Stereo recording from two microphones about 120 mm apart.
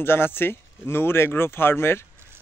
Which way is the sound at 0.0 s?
20° left (ahead or behind).